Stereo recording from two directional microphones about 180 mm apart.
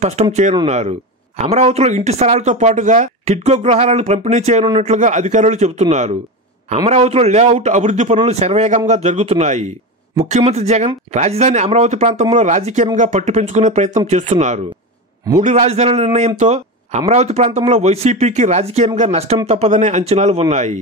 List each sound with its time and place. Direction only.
0.0 s speech: 40° right (ahead or behind)